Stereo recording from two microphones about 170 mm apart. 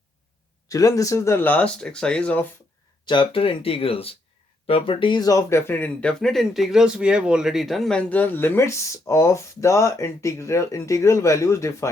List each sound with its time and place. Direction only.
0.7 s speech: 20° left (ahead or behind)
3.1 s speech: 30° left (ahead or behind)